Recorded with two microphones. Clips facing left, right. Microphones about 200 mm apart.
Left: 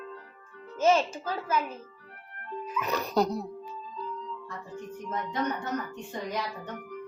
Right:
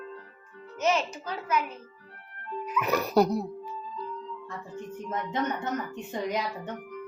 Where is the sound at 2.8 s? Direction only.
10° right (ahead or behind).